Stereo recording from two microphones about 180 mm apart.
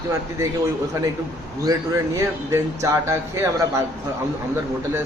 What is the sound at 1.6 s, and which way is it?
Speech, 20° right (ahead or behind).